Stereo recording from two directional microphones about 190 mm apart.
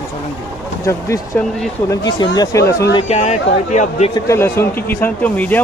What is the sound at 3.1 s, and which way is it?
Speech, 35° left (ahead or behind).